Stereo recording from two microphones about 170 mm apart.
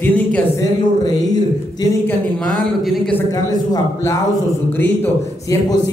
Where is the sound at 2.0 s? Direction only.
5° left (ahead or behind).